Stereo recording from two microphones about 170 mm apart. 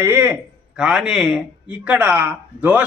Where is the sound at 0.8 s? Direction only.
5° right (ahead or behind).